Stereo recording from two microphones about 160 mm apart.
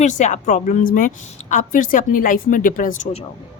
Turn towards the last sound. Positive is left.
turn(degrees=45)  # may be behind; listen again after turning